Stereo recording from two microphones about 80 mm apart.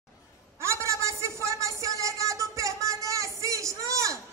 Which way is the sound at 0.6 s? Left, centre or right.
Right.